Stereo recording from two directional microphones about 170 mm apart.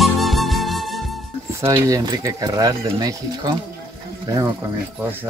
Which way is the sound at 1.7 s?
20° right (ahead or behind).